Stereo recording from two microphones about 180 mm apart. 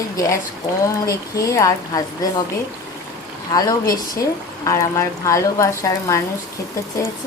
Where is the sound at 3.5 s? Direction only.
20° left (ahead or behind).